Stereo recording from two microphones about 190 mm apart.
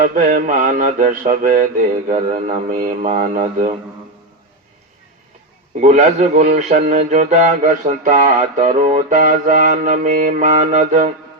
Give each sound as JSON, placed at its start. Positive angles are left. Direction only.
{"t": 0.0, "sound": "mantra", "side_deg": -45}
{"t": 2.0, "sound": "speech", "side_deg": -35}
{"t": 5.8, "sound": "speech", "side_deg": -40}